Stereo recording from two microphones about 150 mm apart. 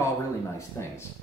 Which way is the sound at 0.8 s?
15° left (ahead or behind).